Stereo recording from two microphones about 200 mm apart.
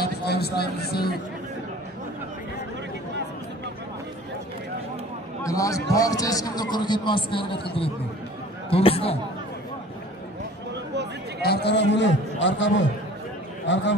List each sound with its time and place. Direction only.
0.0 s a sound: 50° left (ahead or behind)
5.4 s a man's voice: 15° left (ahead or behind)
8.6 s a man's voice: 30° left (ahead or behind)
11.4 s a man's voice: 55° left (ahead or behind)